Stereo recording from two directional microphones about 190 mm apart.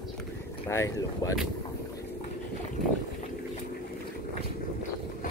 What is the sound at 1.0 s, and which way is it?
Speech, 15° left (ahead or behind).